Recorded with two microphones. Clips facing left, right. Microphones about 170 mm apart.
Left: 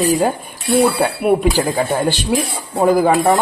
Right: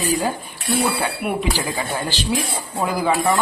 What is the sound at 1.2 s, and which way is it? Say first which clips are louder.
Speech: left 11 dB; 45° left (ahead or behind).